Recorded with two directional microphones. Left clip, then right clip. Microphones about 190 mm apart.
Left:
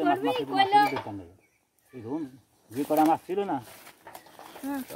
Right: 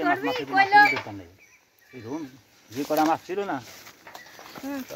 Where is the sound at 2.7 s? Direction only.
45° left (ahead or behind).